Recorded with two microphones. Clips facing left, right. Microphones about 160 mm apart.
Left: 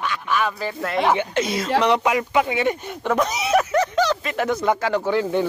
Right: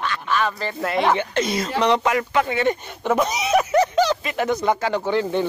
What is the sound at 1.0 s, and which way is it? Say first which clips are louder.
Speech: left 1 dB; 10° left (ahead or behind).